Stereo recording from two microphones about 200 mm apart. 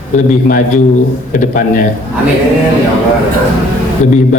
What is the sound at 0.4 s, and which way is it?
Speech, 40° left (ahead or behind).